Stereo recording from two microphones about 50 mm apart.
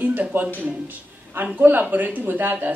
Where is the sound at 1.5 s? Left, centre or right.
Right.